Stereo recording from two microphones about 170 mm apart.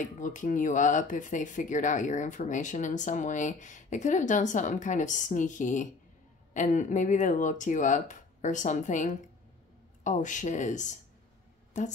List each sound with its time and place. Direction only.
0.0 s speech: 50° left (ahead or behind)